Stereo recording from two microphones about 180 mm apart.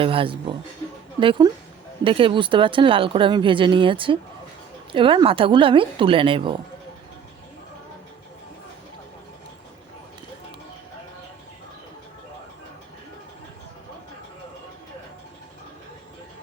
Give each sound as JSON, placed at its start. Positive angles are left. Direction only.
{"t": 0.0, "sound": "speech", "side_deg": -30}